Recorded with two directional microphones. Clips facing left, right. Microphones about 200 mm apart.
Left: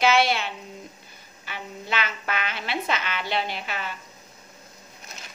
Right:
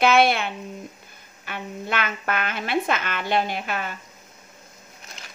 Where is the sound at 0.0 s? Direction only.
55° right (ahead or behind).